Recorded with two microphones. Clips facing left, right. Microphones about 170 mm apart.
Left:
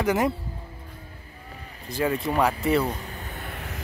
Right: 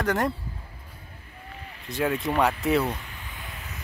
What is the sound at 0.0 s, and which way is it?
Speech, 5° left (ahead or behind).